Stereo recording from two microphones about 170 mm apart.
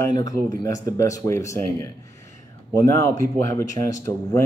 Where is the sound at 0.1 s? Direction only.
20° left (ahead or behind).